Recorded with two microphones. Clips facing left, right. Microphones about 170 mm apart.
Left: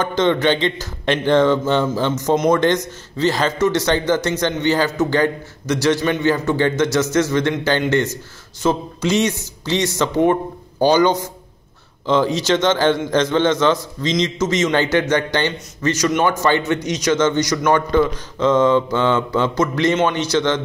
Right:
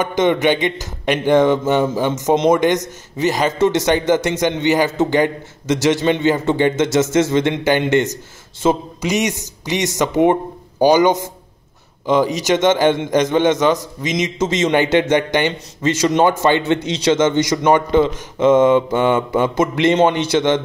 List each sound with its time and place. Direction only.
0.0 s a man's voice: 15° right (ahead or behind)
14.4 s speech: 25° right (ahead or behind)
19.5 s speech: 25° right (ahead or behind)